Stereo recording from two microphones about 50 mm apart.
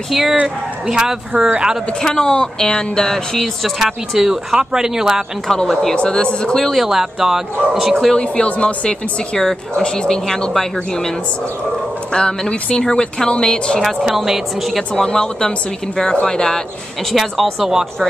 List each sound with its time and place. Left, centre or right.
0.1 s speech: centre
2.0 s speech: centre
3.3 s speech: centre
5.7 s speech: centre
5.9 s speech: centre
6.6 s speech: centre
8.2 s a woman's voice: left
12.1 s speech: centre
13.8 s speech: centre
15.0 s speech: centre
17.1 s speech: centre